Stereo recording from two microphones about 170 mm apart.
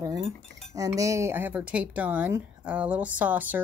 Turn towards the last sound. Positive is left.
turn(degrees=-10)  # may be behind; listen again after turning